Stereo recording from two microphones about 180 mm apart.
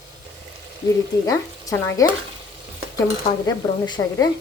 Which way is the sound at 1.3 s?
20° left (ahead or behind).